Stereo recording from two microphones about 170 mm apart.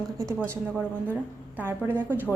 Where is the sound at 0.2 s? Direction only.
15° right (ahead or behind).